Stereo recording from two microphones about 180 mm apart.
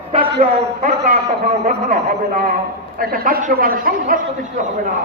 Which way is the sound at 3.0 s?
55° right (ahead or behind).